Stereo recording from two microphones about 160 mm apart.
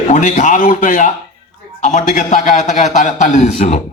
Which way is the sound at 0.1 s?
50° left (ahead or behind).